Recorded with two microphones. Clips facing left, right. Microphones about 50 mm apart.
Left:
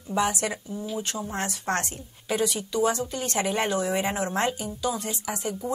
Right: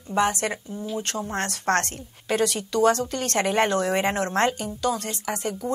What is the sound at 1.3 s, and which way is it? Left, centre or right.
A woman's voice, right.